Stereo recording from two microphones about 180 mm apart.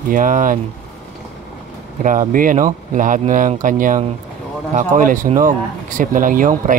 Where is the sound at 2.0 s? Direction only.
45° right (ahead or behind).